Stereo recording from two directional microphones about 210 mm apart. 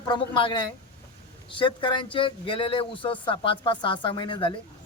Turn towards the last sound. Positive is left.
turn(degrees=25)  # may be behind; listen again after turning